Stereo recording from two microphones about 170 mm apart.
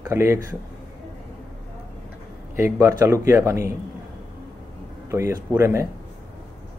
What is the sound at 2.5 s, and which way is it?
Speech, 15° right (ahead or behind).